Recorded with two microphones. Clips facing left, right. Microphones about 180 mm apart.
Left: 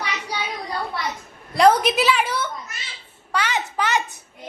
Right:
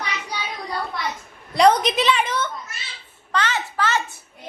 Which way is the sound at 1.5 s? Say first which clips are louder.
Even; 5° left (ahead or behind).